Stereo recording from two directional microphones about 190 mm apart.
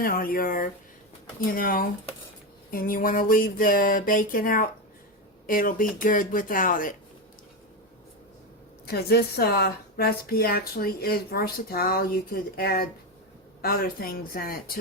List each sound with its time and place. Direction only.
0.0 s speech: 50° left (ahead or behind)
8.9 s speech: 55° left (ahead or behind)